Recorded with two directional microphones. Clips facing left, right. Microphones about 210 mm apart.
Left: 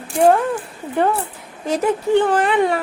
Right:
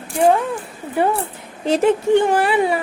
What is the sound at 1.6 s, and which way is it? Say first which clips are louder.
Speech: right 4 dB; 30° right (ahead or behind).